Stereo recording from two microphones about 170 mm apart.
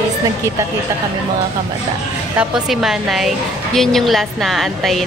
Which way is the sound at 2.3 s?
5° right (ahead or behind).